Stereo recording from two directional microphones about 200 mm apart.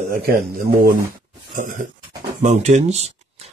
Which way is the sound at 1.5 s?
45° right (ahead or behind).